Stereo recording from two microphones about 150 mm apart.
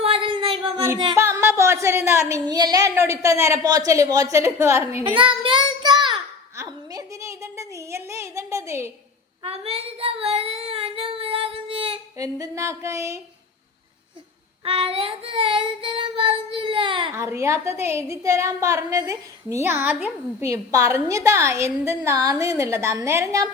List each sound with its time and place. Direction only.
0.0 s a sound: 40° right (ahead or behind)
1.1 s a woman's voice: 20° right (ahead or behind)
5.0 s child singing: 35° right (ahead or behind)
6.6 s a sound: 25° right (ahead or behind)
9.4 s child singing: 40° right (ahead or behind)
12.1 s a woman's voice: 20° right (ahead or behind)
14.6 s child singing: 40° right (ahead or behind)
17.1 s a woman's voice: 20° right (ahead or behind)